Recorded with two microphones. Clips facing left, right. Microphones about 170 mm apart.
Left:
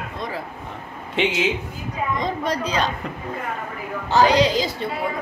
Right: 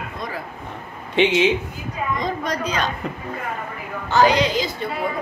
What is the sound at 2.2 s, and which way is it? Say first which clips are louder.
Speech: left 1 dB; 30° left (ahead or behind).